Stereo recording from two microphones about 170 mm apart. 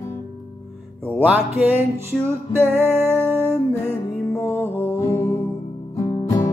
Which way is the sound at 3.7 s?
15° left (ahead or behind).